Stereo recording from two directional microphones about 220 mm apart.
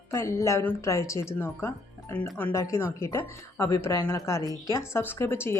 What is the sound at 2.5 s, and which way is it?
Speech, 15° left (ahead or behind).